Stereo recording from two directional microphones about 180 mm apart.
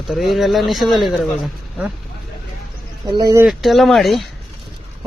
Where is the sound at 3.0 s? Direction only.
20° right (ahead or behind).